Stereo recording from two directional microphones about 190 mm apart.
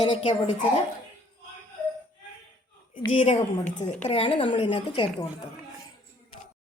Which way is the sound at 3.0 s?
25° left (ahead or behind).